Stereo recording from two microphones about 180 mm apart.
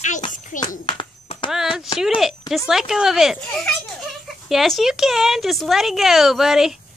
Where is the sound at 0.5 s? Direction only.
45° left (ahead or behind).